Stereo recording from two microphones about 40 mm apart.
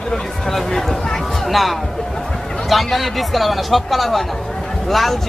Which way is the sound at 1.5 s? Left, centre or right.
Centre.